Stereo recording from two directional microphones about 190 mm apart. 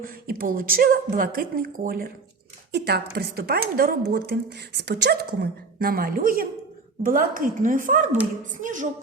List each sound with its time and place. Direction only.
0.0 s speech: 50° right (ahead or behind)